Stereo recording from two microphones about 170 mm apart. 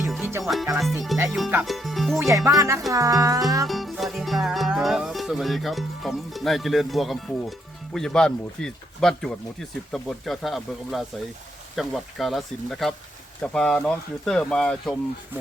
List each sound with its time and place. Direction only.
0.4 s music: centre (ahead or behind)
1.3 s speech: 5° right (ahead or behind)
1.6 s insect: centre (ahead or behind)
2.1 s speech: 20° right (ahead or behind)
3.7 s music: centre (ahead or behind)